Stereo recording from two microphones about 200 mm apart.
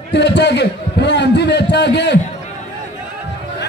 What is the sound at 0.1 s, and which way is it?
A man's voice, 60° left (ahead or behind).